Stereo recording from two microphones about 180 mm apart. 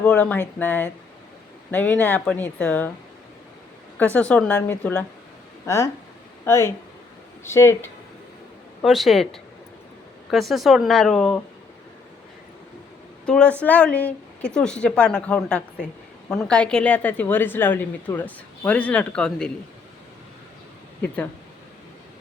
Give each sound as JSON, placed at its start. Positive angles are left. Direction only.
{"t": 0.0, "sound": "a woman's voice", "side_deg": 10}
{"t": 3.9, "sound": "a woman's voice", "side_deg": 10}
{"t": 8.8, "sound": "speech", "side_deg": 0}
{"t": 13.2, "sound": "a woman's voice", "side_deg": 5}